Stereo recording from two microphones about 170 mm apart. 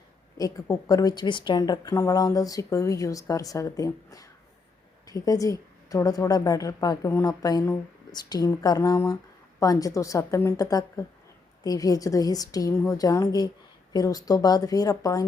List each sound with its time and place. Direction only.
0.3 s speech: 20° left (ahead or behind)